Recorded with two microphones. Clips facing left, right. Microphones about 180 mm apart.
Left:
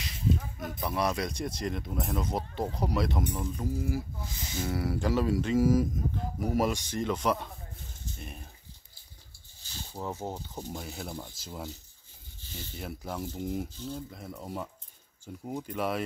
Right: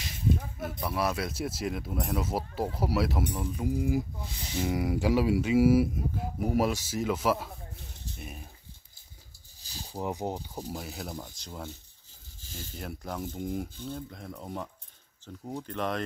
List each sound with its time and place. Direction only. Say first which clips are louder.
0.6 s speech: even; 5° right (ahead or behind)
9.6 s a sound: right 1 dB; 35° right (ahead or behind)
9.9 s speech: right 3 dB; 15° right (ahead or behind)
10.7 s speech: right 1 dB; centre (ahead or behind)
12.7 s speech: even; centre (ahead or behind)